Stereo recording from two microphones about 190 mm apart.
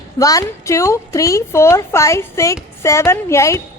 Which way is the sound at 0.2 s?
15° left (ahead or behind).